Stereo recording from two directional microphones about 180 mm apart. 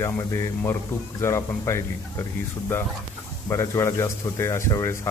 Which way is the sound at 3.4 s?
15° left (ahead or behind).